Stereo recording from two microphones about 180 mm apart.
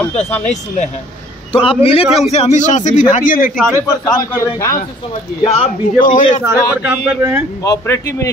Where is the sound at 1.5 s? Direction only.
30° left (ahead or behind); by 3.5 s 45° left (ahead or behind).